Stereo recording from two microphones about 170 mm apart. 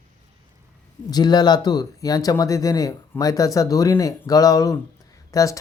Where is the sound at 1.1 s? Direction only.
25° left (ahead or behind).